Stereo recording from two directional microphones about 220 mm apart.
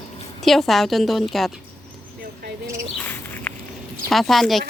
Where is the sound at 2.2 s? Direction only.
40° right (ahead or behind).